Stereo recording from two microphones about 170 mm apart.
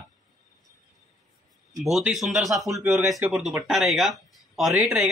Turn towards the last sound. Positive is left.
turn(degrees=-5)  # may be behind; listen again after turning